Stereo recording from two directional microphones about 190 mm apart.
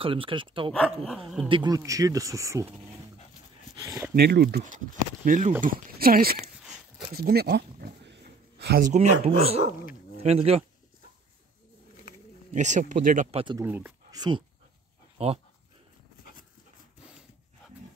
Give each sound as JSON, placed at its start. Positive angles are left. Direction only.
{"t": 0.0, "sound": "speech", "side_deg": -30}
{"t": 4.1, "sound": "speech", "side_deg": -55}
{"t": 7.1, "sound": "pig", "side_deg": -55}
{"t": 8.9, "sound": "speech", "side_deg": -35}
{"t": 12.5, "sound": "speech", "side_deg": -40}
{"t": 13.3, "sound": "speech", "side_deg": -30}
{"t": 13.6, "sound": "speech", "side_deg": -10}
{"t": 14.1, "sound": "speech", "side_deg": -20}